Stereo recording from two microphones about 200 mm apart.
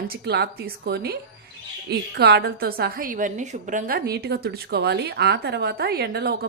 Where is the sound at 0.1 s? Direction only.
55° right (ahead or behind).